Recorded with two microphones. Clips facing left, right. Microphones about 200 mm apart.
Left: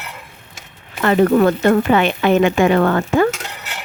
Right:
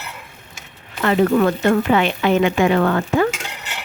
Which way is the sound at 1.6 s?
55° left (ahead or behind).